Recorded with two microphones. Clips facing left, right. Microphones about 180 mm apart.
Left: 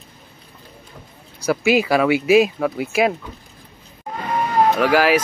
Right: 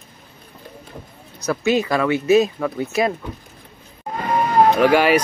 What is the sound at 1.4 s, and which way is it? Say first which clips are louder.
Speech: left 2 dB; 10° left (ahead or behind).